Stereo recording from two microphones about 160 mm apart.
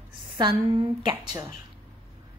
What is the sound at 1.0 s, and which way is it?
Speech, 25° right (ahead or behind).